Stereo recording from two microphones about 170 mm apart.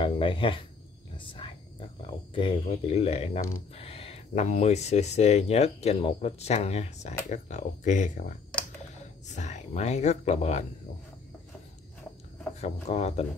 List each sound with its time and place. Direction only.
0.0 s speech: 30° left (ahead or behind)
12.8 s speech: 40° left (ahead or behind)